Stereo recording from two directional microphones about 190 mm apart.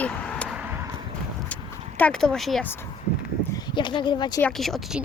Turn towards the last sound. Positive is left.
turn(degrees=0)  # may be behind; listen again after turning